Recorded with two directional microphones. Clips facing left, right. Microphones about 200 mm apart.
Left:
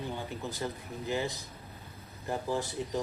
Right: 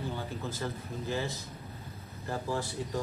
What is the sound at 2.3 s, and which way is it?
Speech, 20° left (ahead or behind).